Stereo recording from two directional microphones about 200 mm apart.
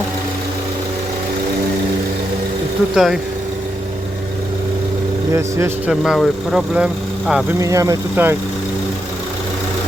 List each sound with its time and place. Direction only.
2.9 s speech: 5° right (ahead or behind)
5.3 s speech: 15° right (ahead or behind)
7.6 s speech: 15° right (ahead or behind)